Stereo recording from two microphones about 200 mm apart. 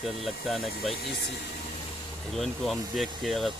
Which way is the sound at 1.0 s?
55° left (ahead or behind).